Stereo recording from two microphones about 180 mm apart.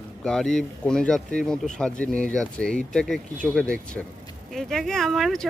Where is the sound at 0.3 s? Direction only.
5° left (ahead or behind).